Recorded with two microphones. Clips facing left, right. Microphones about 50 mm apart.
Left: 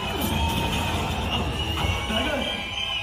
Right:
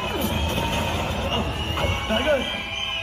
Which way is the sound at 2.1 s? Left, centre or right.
Centre.